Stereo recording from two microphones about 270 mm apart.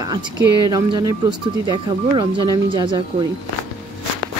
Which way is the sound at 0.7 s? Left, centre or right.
Centre.